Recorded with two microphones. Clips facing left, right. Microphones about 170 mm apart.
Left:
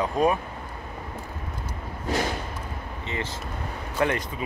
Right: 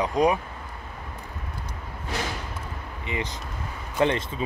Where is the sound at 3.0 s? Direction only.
15° right (ahead or behind).